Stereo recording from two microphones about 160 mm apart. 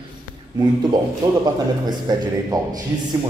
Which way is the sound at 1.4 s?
25° right (ahead or behind).